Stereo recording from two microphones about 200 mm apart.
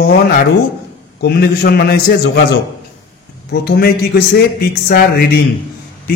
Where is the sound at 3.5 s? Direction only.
50° left (ahead or behind).